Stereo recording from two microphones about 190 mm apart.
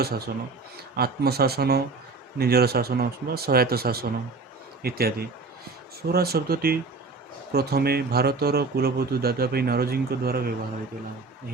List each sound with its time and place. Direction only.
0.9 s speech: 55° right (ahead or behind)